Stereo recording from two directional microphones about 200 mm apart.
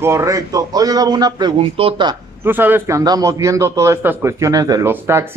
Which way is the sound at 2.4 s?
10° right (ahead or behind).